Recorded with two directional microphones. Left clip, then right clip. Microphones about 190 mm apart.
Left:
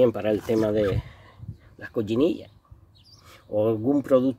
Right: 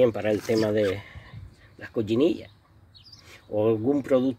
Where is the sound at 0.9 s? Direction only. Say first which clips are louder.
Even; 10° left (ahead or behind).